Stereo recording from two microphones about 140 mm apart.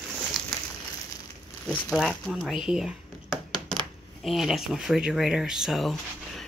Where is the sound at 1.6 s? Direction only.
Centre (ahead or behind).